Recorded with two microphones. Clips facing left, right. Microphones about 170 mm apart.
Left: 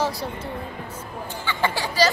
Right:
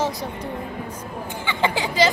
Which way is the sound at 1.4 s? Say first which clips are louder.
Right 2 dB; 20° right (ahead or behind).